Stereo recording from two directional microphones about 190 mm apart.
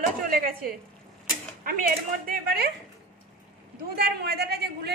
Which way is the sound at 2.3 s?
55° right (ahead or behind).